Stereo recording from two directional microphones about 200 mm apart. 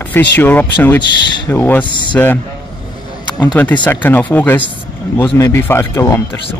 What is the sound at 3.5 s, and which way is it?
Speech, 10° left (ahead or behind).